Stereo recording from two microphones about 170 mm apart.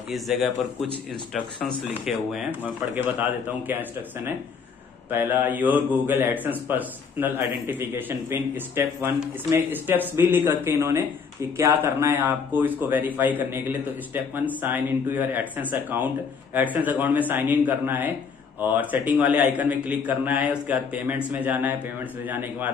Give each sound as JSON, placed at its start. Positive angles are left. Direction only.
{"t": 0.1, "sound": "speech", "side_deg": 0}
{"t": 5.1, "sound": "speech", "side_deg": -10}